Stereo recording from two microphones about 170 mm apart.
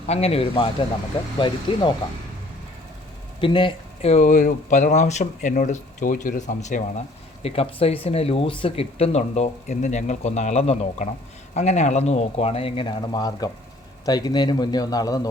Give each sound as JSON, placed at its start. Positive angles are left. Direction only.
{"t": 0.1, "sound": "speech", "side_deg": 35}
{"t": 3.4, "sound": "speech", "side_deg": 30}
{"t": 4.1, "sound": "speech", "side_deg": 50}